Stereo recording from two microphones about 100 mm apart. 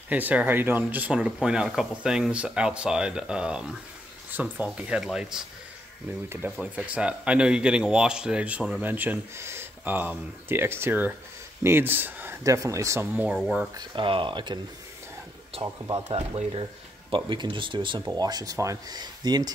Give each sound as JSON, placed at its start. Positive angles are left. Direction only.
{"t": 0.1, "sound": "speech", "side_deg": -15}
{"t": 6.6, "sound": "speech", "side_deg": -10}
{"t": 12.4, "sound": "speech", "side_deg": -30}
{"t": 13.1, "sound": "speech", "side_deg": -15}
{"t": 13.7, "sound": "speech", "side_deg": -55}
{"t": 16.1, "sound": "speech", "side_deg": -80}
{"t": 17.1, "sound": "speech", "side_deg": -55}
{"t": 18.0, "sound": "speech", "side_deg": -40}